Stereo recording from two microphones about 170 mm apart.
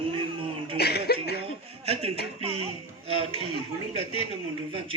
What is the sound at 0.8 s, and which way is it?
Speech, 70° left (ahead or behind).